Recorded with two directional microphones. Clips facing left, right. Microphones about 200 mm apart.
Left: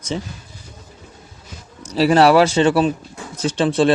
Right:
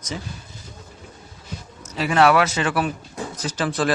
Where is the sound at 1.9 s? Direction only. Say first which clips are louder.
Left 5 dB; 35° left (ahead or behind).